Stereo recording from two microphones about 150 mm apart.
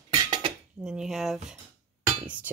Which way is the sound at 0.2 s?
30° right (ahead or behind).